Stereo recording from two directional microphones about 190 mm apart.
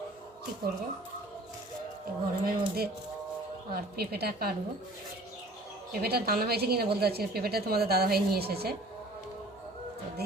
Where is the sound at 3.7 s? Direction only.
55° right (ahead or behind).